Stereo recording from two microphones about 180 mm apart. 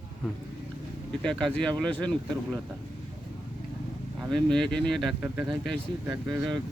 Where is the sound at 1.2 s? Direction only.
5° left (ahead or behind).